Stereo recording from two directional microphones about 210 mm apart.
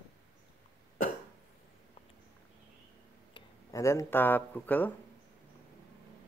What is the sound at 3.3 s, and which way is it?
Speech, 15° left (ahead or behind).